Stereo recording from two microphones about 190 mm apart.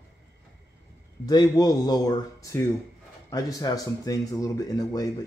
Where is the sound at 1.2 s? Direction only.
20° left (ahead or behind).